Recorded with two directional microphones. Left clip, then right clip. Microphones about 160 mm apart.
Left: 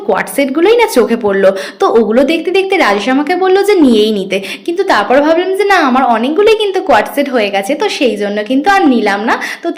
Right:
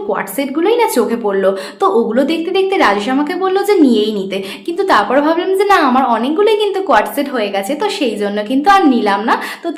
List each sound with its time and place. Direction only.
0.1 s a woman's voice: 25° left (ahead or behind)